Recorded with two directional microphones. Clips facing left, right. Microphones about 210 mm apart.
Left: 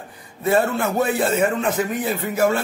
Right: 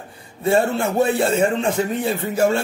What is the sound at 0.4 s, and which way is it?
A man's voice, 30° right (ahead or behind).